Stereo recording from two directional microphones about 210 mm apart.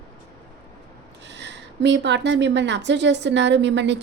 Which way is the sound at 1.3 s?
55° right (ahead or behind).